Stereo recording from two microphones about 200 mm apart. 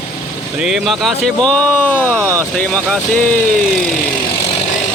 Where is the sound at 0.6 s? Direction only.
5° right (ahead or behind).